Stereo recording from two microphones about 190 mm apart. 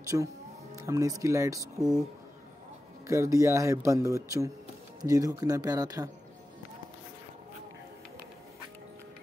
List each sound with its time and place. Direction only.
0.8 s speech: 15° right (ahead or behind)
1.8 s speech: 5° right (ahead or behind)
3.1 s speech: 15° right (ahead or behind)